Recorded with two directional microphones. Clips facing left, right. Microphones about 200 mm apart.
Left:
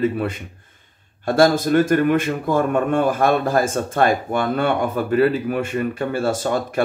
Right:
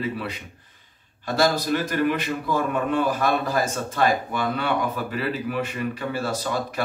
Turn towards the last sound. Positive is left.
turn(degrees=50)  # may be behind; listen again after turning